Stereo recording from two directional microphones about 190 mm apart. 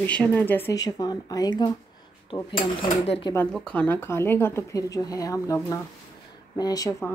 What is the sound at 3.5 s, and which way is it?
Speech, 5° left (ahead or behind).